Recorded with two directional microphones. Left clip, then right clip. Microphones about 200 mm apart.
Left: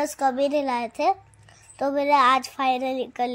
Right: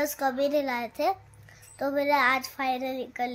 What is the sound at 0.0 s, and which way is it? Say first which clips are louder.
A woman's voice: left 4 dB; 20° left (ahead or behind).